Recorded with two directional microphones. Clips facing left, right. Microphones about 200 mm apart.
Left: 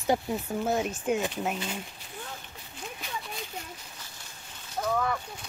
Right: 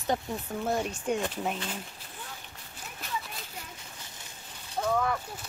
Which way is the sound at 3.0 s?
Centre (ahead or behind).